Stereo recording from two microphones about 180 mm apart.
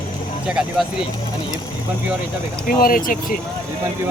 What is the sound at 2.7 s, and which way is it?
Speech, 50° left (ahead or behind).